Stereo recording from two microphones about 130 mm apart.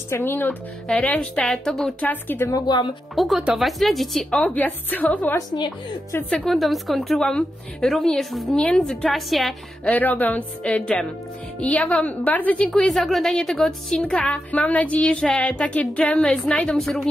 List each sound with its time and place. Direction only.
0.1 s a woman's voice: 15° left (ahead or behind)
2.6 s speech: 35° left (ahead or behind)
3.2 s a woman's voice: centre (ahead or behind)
6.3 s a woman's voice: centre (ahead or behind)
9.9 s a woman's voice: 15° left (ahead or behind)